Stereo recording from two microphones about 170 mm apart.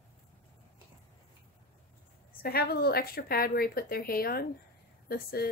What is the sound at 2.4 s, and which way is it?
Speech, 65° left (ahead or behind).